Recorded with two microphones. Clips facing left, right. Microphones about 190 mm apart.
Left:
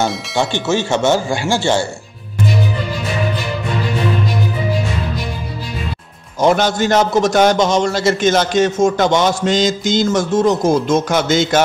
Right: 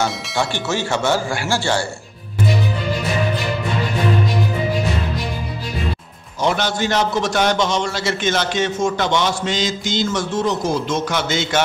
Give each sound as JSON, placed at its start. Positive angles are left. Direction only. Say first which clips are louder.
{"t": 0.7, "sound": "speech", "louder": "left 6 dB", "side_deg": 20}
{"t": 6.4, "sound": "a man's voice", "louder": "left 6 dB", "side_deg": 45}